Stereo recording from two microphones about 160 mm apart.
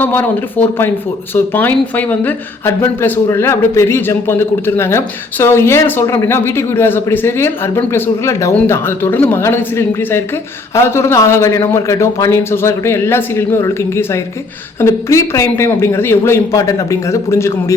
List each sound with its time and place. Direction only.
0.0 s a woman's voice: 10° left (ahead or behind)